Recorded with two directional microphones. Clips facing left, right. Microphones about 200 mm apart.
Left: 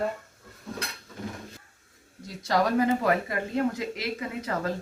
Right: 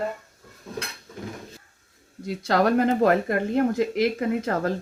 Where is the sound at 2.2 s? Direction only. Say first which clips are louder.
Right 4 dB; 65° right (ahead or behind).